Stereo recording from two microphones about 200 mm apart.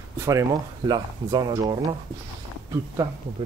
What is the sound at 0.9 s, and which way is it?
Speech, 20° right (ahead or behind).